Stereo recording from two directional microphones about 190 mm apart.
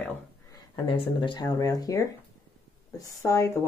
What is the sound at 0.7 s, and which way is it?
Speech, 25° left (ahead or behind).